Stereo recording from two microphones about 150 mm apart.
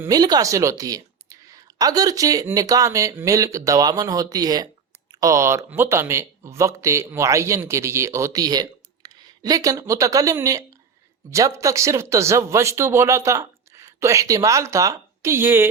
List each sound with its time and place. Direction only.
0.0 s speech: 25° right (ahead or behind)